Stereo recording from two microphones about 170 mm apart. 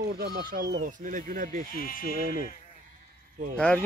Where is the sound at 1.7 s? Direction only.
60° left (ahead or behind).